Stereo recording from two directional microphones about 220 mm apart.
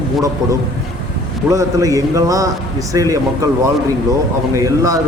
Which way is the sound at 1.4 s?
15° right (ahead or behind).